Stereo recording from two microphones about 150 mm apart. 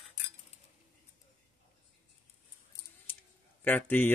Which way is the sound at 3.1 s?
10° left (ahead or behind).